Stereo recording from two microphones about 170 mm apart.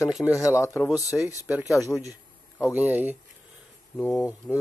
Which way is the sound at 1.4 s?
10° right (ahead or behind).